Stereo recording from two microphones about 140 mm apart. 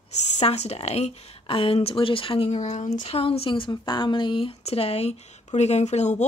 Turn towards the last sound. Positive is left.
turn(degrees=55)  # may be behind; listen again after turning